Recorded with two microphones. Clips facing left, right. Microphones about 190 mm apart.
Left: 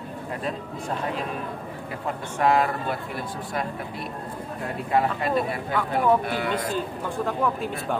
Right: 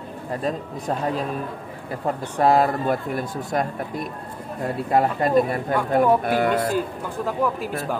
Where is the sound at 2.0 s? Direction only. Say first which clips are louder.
Right 4 dB; 35° right (ahead or behind).